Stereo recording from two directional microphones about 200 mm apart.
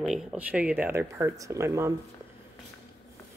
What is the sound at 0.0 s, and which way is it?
Speech, centre (ahead or behind).